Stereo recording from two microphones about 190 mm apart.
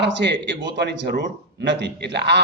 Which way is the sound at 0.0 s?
65° right (ahead or behind).